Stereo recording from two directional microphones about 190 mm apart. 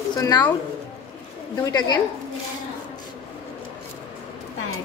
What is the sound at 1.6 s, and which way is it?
Speech, 20° left (ahead or behind).